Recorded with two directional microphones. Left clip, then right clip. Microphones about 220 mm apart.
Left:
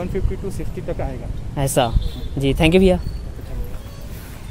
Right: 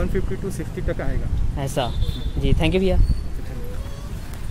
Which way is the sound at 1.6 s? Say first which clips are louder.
Left 6 dB; 50° left (ahead or behind).